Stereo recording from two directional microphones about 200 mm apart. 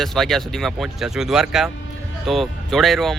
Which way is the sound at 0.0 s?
Centre (ahead or behind).